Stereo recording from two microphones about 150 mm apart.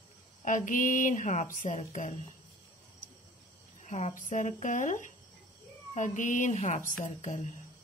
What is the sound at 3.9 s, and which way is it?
Speech, 55° left (ahead or behind).